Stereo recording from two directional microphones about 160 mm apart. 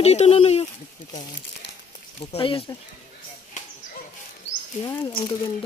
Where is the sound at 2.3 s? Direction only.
35° left (ahead or behind).